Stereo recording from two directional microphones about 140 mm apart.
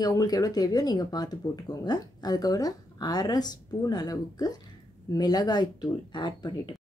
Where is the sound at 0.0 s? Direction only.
25° left (ahead or behind).